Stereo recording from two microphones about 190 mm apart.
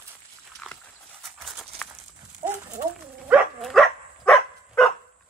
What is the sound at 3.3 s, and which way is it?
Dog, centre (ahead or behind).